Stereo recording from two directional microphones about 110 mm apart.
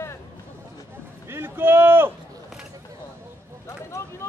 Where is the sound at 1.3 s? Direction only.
20° right (ahead or behind).